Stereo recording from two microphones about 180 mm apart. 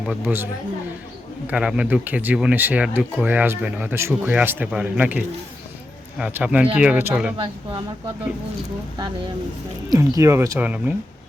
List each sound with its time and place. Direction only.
0.0 s speech: 5° right (ahead or behind)
1.5 s speech: 5° right (ahead or behind)
7.3 s speech: 25° right (ahead or behind)
9.9 s speech: 15° right (ahead or behind)